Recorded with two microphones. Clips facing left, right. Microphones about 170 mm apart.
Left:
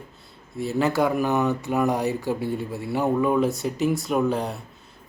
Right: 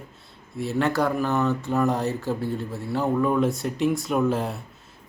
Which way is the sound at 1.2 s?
15° left (ahead or behind).